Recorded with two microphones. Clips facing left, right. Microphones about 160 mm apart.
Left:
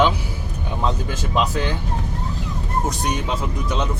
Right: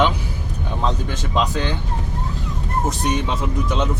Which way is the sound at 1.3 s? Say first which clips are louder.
Even; 5° left (ahead or behind).